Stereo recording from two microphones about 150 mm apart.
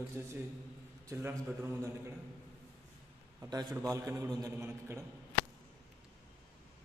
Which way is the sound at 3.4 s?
25° right (ahead or behind).